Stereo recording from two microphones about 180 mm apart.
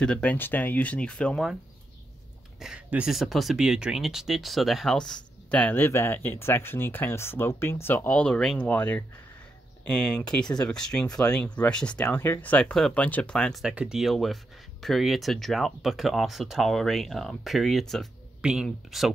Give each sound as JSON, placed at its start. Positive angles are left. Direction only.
{"t": 0.0, "sound": "speech", "side_deg": 5}
{"t": 2.6, "sound": "speech", "side_deg": -5}